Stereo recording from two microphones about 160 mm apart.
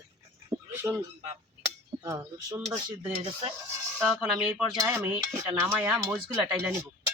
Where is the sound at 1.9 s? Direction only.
20° right (ahead or behind).